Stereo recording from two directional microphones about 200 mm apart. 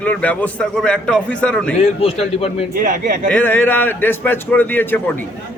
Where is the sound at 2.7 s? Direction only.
40° right (ahead or behind).